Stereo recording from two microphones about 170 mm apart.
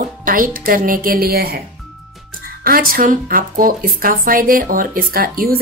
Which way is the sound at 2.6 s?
55° right (ahead or behind).